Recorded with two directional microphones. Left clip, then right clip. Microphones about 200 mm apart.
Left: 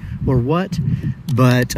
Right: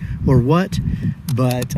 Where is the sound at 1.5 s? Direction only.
30° right (ahead or behind).